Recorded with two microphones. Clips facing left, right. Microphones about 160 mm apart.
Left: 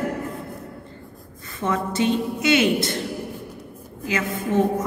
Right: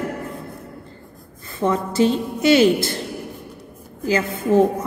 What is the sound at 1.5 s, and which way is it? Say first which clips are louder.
A woman's voice: right 4 dB; 35° right (ahead or behind).